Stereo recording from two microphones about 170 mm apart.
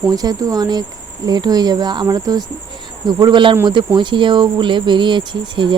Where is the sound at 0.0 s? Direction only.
20° right (ahead or behind).